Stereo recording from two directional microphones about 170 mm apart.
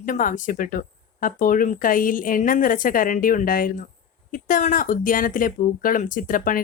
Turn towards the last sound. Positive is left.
turn(degrees=55)  # may be behind; listen again after turning